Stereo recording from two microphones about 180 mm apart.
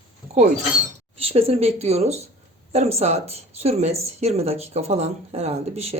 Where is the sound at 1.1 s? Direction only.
35° right (ahead or behind).